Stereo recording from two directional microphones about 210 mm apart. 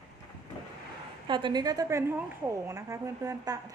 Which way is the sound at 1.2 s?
20° right (ahead or behind).